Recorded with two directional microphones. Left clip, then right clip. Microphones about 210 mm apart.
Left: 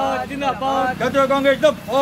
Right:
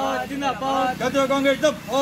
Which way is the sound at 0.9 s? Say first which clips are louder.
Left 4 dB; 5° right (ahead or behind).